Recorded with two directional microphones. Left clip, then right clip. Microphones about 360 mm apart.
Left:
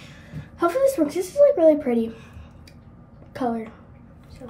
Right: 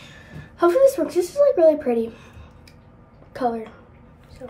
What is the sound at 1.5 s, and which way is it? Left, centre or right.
Speech, centre.